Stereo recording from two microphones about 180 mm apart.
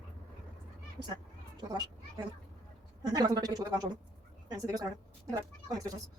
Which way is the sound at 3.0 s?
20° right (ahead or behind).